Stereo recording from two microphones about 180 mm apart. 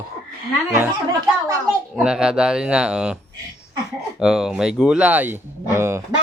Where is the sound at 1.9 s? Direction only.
5° right (ahead or behind).